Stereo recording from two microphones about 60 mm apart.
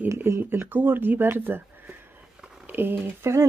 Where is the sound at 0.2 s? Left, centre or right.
Right.